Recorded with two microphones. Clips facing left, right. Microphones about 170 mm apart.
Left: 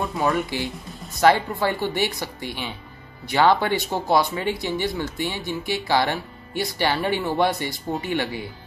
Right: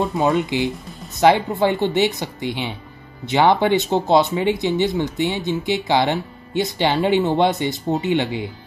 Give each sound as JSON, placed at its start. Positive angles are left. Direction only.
{"t": 0.0, "sound": "speech", "side_deg": -20}